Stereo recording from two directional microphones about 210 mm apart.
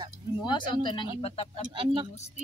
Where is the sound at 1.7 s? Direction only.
25° right (ahead or behind).